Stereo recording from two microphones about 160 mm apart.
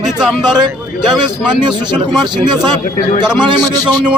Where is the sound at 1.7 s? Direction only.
30° right (ahead or behind).